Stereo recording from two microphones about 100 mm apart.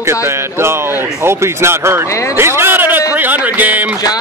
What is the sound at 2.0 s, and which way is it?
Speech, 30° left (ahead or behind).